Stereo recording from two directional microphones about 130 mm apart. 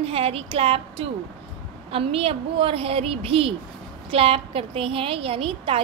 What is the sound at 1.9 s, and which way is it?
A woman's voice, 45° right (ahead or behind).